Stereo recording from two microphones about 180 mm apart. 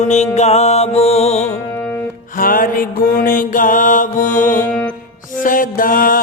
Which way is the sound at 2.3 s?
50° left (ahead or behind).